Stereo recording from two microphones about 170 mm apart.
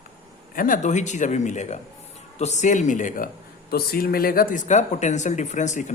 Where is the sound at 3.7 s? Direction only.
65° left (ahead or behind).